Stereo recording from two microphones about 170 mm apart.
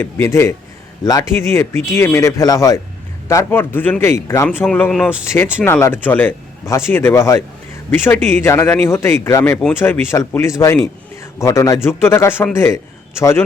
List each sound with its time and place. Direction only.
0.0 s a man's voice: 15° left (ahead or behind)